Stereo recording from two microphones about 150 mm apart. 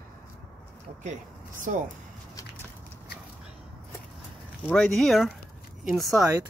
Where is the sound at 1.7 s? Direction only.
60° right (ahead or behind).